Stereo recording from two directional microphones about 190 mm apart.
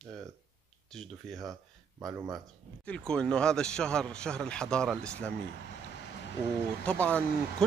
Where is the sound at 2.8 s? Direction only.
5° left (ahead or behind).